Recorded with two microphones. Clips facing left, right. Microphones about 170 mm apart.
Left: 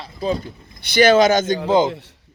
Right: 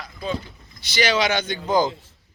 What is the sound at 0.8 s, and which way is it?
Speech, 55° left (ahead or behind).